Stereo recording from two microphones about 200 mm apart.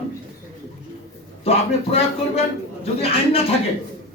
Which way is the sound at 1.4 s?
30° left (ahead or behind).